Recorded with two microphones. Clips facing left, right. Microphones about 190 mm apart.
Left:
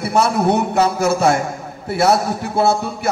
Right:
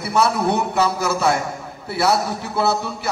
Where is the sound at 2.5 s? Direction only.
50° left (ahead or behind).